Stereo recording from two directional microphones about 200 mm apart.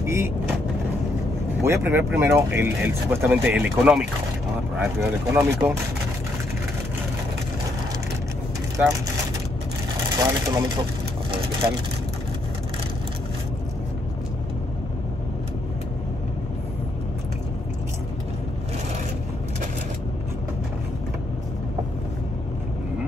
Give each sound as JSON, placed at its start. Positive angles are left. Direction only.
{"t": 0.0, "sound": "speech", "side_deg": -15}
{"t": 1.6, "sound": "speech", "side_deg": -10}
{"t": 10.1, "sound": "speech", "side_deg": -20}